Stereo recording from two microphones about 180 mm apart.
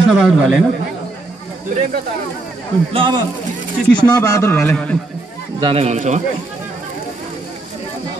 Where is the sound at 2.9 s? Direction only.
25° right (ahead or behind).